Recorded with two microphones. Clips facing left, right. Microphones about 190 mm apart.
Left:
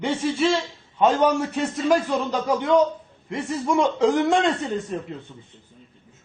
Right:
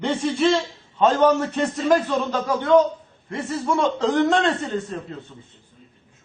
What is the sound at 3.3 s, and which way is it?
A man's voice, 15° left (ahead or behind).